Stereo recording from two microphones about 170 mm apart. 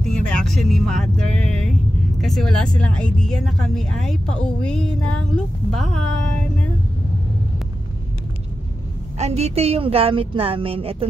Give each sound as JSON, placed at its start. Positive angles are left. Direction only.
{"t": 0.0, "sound": "speech", "side_deg": 0}
{"t": 9.2, "sound": "a woman's voice", "side_deg": -40}